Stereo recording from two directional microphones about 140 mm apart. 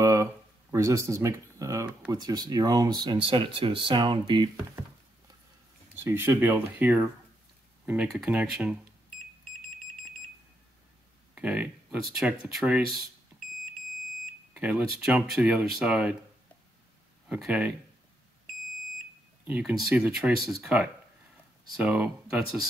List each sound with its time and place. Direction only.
0.0 s guitar: 20° right (ahead or behind)
2.1 s speech: 30° right (ahead or behind)
6.0 s speech: 15° right (ahead or behind)
11.3 s speech: 10° right (ahead or behind)
14.5 s speech: 10° right (ahead or behind)
17.3 s speech: 10° right (ahead or behind)
19.4 s speech: 10° right (ahead or behind)